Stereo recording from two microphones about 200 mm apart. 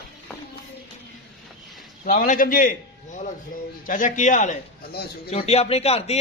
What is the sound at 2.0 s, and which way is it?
A man's voice, 45° left (ahead or behind).